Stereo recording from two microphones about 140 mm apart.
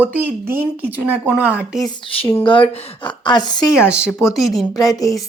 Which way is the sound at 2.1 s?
40° left (ahead or behind).